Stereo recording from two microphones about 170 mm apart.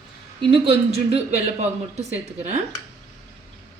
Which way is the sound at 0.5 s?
35° right (ahead or behind).